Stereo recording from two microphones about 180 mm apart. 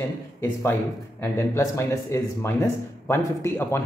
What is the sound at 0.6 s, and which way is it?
Speech, 15° left (ahead or behind).